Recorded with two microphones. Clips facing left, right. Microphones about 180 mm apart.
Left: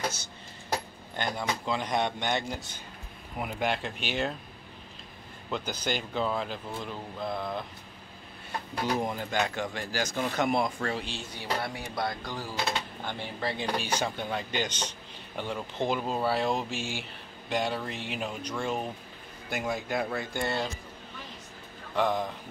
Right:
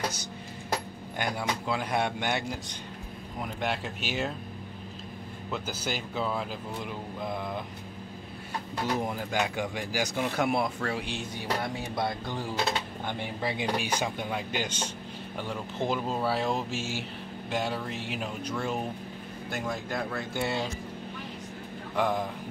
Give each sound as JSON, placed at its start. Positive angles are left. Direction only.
{"t": 1.1, "sound": "speech", "side_deg": -10}
{"t": 3.3, "sound": "speech", "side_deg": 5}
{"t": 5.5, "sound": "speech", "side_deg": -5}
{"t": 8.8, "sound": "speech", "side_deg": 0}
{"t": 12.0, "sound": "music", "side_deg": -25}
{"t": 13.0, "sound": "speech", "side_deg": -20}
{"t": 20.4, "sound": "speech", "side_deg": -10}
{"t": 21.9, "sound": "speech", "side_deg": -5}